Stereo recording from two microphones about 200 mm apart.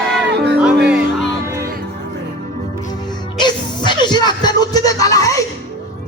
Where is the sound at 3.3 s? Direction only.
20° left (ahead or behind).